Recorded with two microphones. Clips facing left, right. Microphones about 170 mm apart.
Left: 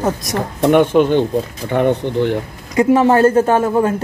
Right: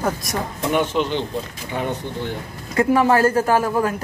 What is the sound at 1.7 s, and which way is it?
Speech, 65° left (ahead or behind).